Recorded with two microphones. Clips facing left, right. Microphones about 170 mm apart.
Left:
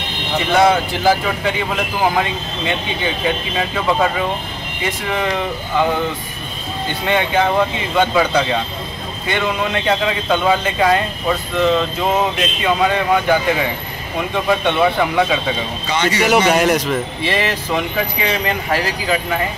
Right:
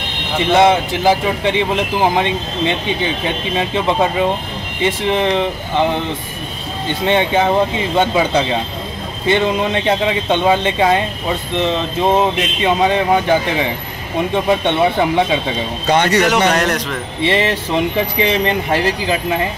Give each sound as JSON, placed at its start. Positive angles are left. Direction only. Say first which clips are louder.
{"t": 0.5, "sound": "speech", "louder": "right 2 dB", "side_deg": -25}
{"t": 7.1, "sound": "speech", "louder": "right 2 dB", "side_deg": -20}
{"t": 15.9, "sound": "speech", "louder": "right 5 dB", "side_deg": -55}
{"t": 16.3, "sound": "a man's voice", "louder": "left 1 dB", "side_deg": 5}
{"t": 17.2, "sound": "speech", "louder": "right 3 dB", "side_deg": -25}